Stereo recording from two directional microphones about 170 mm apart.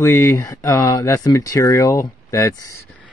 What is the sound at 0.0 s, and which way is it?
Speech, 15° left (ahead or behind).